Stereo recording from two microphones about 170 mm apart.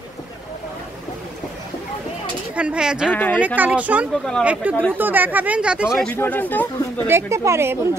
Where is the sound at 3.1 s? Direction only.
10° left (ahead or behind).